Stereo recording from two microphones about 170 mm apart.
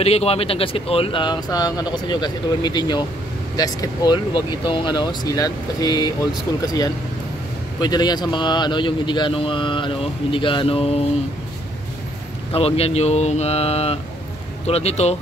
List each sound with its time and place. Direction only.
0.0 s speech: 35° left (ahead or behind)
12.5 s speech: 35° left (ahead or behind)